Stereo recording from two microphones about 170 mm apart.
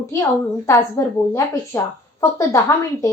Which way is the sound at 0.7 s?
15° left (ahead or behind).